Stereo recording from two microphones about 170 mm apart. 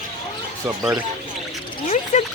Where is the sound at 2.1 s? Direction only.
45° left (ahead or behind).